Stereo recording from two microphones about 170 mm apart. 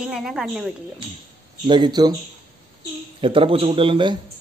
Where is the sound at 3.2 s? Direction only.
30° right (ahead or behind).